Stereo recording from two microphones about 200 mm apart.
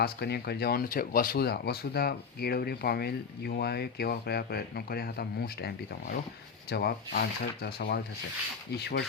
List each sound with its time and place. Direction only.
0.0 s speech: 50° left (ahead or behind)
6.7 s speech: 50° left (ahead or behind)